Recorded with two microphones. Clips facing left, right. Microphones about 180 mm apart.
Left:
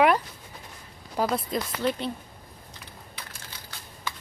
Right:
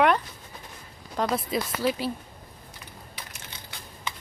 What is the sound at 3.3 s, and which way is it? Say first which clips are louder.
Computer keyboard: right 1 dB; 20° right (ahead or behind).